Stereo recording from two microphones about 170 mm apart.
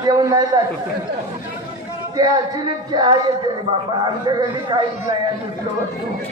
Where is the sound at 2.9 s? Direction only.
25° right (ahead or behind).